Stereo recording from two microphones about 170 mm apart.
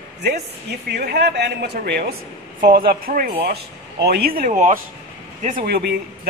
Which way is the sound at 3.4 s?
70° right (ahead or behind).